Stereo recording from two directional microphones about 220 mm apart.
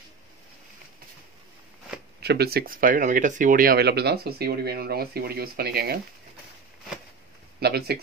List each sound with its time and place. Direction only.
2.1 s speech: 45° right (ahead or behind)
7.6 s speech: 45° right (ahead or behind)